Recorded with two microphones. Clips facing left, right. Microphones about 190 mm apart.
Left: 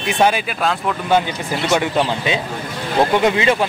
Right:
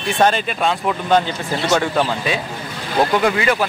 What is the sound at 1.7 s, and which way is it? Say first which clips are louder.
Speech: even; 15° left (ahead or behind).